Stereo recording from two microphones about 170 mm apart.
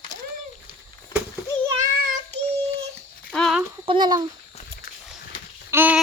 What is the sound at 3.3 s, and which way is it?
Speech, 5° left (ahead or behind).